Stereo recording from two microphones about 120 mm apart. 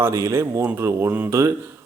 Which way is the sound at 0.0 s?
25° right (ahead or behind).